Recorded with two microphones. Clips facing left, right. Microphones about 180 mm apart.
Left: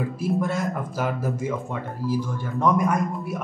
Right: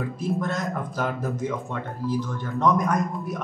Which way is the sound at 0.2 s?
10° left (ahead or behind).